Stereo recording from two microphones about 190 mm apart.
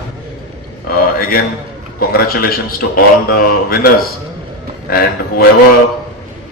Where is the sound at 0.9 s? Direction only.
50° left (ahead or behind).